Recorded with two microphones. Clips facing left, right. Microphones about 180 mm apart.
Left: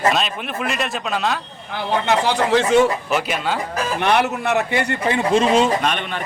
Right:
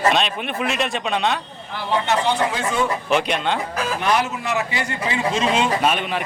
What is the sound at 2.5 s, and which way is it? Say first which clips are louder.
Speech: left 8 dB; 75° left (ahead or behind).